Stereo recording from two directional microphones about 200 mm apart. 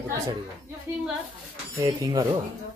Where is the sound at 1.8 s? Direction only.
20° right (ahead or behind).